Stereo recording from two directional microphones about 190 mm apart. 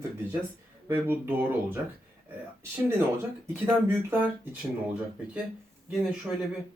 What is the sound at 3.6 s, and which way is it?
Speech, 10° right (ahead or behind).